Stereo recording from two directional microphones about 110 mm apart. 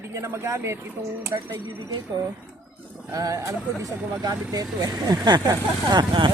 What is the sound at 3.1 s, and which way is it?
Speech, 30° right (ahead or behind).